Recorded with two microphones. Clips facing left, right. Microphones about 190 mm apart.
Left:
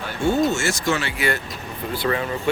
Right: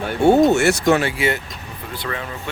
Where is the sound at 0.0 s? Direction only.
65° right (ahead or behind).